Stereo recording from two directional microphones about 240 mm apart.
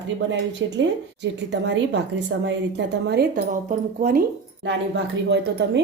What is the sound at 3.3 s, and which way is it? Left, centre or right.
Speech, right.